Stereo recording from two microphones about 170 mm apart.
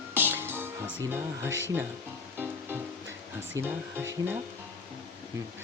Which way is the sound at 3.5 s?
15° right (ahead or behind).